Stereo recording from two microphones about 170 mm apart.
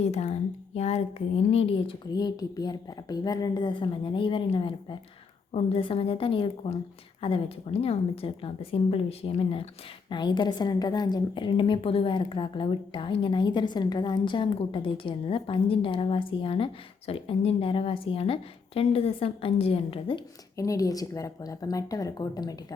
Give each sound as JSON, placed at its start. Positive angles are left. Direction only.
{"t": 0.0, "sound": "a woman's voice", "side_deg": 40}
{"t": 20.6, "sound": "a woman's voice", "side_deg": 20}